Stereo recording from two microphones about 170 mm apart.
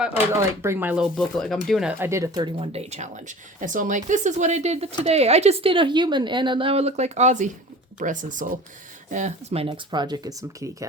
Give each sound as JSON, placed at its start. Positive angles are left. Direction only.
{"t": 0.3, "sound": "speech", "side_deg": -15}
{"t": 1.1, "sound": "speech", "side_deg": 0}
{"t": 2.6, "sound": "speech", "side_deg": -40}